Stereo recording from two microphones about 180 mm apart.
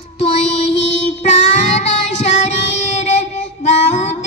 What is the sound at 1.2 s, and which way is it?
Child singing, 40° left (ahead or behind).